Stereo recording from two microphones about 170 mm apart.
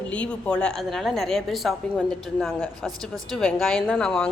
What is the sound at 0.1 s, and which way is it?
Speech, 5° left (ahead or behind).